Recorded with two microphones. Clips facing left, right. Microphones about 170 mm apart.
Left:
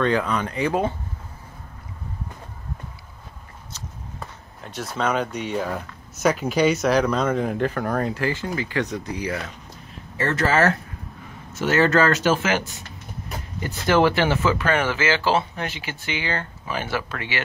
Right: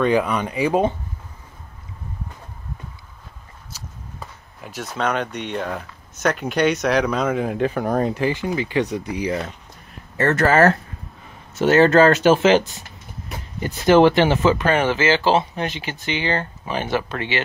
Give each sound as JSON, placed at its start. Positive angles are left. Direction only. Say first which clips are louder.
{"t": 0.0, "sound": "speech", "louder": "right 3 dB", "side_deg": -15}
{"t": 4.2, "sound": "speech", "louder": "right 1 dB", "side_deg": 0}
{"t": 10.1, "sound": "speech", "louder": "right 4 dB", "side_deg": -60}
{"t": 11.6, "sound": "speech", "louder": "right 5 dB", "side_deg": -25}